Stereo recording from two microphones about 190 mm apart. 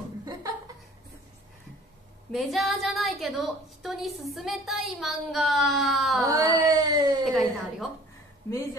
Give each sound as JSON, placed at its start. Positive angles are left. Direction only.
{"t": 0.2, "sound": "chuckle", "side_deg": -20}
{"t": 2.3, "sound": "a woman's voice", "side_deg": 0}
{"t": 6.2, "sound": "a sound", "side_deg": -15}
{"t": 6.7, "sound": "speech", "side_deg": -20}
{"t": 7.2, "sound": "a woman's voice", "side_deg": 0}